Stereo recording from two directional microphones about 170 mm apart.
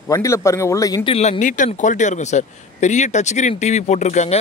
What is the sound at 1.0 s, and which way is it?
Speech, 40° left (ahead or behind).